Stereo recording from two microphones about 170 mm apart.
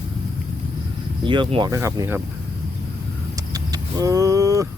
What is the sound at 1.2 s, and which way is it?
Speech, 30° right (ahead or behind).